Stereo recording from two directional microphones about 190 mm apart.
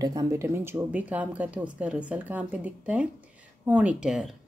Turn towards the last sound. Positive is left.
turn(degrees=0)  # may be behind; listen again after turning